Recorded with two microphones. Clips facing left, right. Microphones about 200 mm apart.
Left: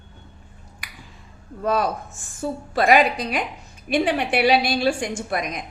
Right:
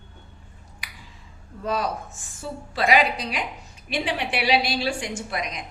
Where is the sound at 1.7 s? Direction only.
55° left (ahead or behind).